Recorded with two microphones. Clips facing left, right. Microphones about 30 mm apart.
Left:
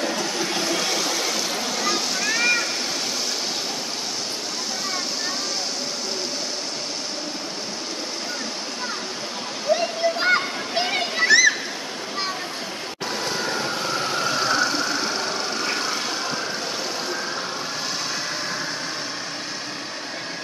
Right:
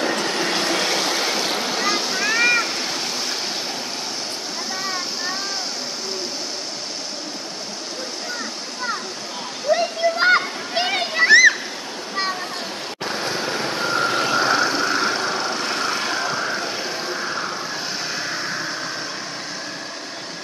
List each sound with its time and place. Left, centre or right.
0.0 s vehicle: right; by 2.7 s centre
9.7 s waterfall: centre
10.1 s a sound: right
10.7 s a sound: centre
11.2 s splash: right
13.9 s vehicle: right
14.4 s vehicle: right
15.1 s vehicle: centre
18.1 s vehicle: centre